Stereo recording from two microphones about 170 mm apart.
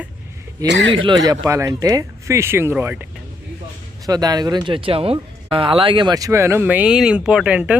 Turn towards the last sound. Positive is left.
turn(degrees=-5)  # may be behind; listen again after turning